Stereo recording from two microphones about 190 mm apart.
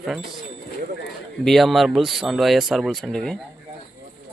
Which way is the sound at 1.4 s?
Centre (ahead or behind).